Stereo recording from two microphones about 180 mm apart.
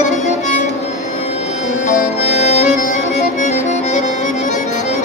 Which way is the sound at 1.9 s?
40° left (ahead or behind).